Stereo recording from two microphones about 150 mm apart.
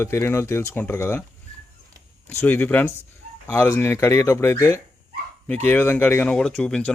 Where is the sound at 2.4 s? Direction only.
10° left (ahead or behind).